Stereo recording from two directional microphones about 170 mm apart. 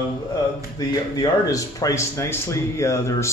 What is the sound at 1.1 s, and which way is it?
Speech, 20° left (ahead or behind).